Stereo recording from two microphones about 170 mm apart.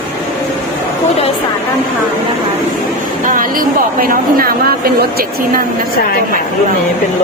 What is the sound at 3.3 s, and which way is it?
Speech, 55° right (ahead or behind).